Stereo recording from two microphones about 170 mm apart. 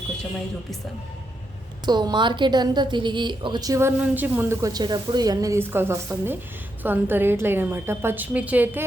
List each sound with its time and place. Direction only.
1.8 s a woman's voice: 25° right (ahead or behind)